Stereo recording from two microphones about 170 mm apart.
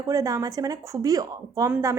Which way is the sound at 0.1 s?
20° right (ahead or behind).